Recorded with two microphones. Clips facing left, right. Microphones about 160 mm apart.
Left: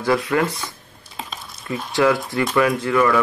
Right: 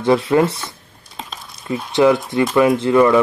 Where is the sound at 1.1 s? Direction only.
Centre (ahead or behind).